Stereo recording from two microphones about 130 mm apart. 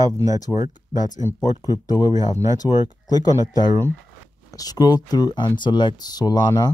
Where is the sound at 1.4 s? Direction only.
30° left (ahead or behind).